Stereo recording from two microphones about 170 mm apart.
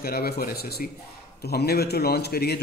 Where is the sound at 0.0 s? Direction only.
65° left (ahead or behind).